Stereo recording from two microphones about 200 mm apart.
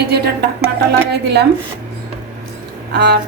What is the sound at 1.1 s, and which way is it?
Speech, 55° right (ahead or behind).